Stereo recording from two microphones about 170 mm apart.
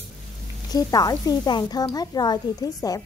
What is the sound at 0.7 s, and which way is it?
Speech, 20° left (ahead or behind).